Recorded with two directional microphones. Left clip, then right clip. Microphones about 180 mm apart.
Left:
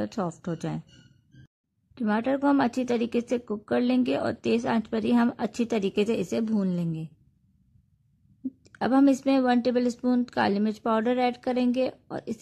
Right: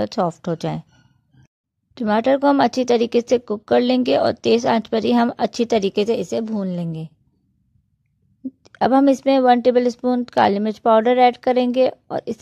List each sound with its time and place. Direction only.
0.0 s speech: 35° right (ahead or behind)
2.0 s a woman's voice: 35° right (ahead or behind)
8.6 s a woman's voice: 25° right (ahead or behind)